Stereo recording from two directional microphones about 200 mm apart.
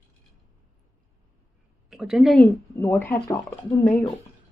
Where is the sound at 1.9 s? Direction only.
Centre (ahead or behind).